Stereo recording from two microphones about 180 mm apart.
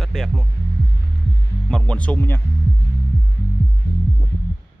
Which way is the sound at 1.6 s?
5° left (ahead or behind).